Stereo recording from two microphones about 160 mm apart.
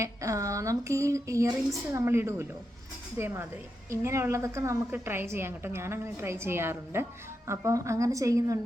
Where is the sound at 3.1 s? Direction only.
15° right (ahead or behind).